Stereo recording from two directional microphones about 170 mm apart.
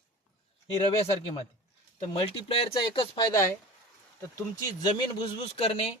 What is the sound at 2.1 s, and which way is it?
Speech, 35° left (ahead or behind).